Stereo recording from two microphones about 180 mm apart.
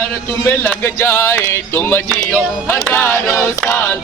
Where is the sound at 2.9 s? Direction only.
10° left (ahead or behind).